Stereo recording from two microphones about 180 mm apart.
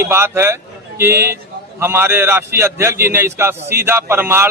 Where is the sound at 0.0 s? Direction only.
15° right (ahead or behind).